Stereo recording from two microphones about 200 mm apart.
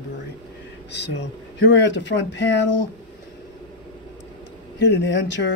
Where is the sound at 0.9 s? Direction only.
60° left (ahead or behind).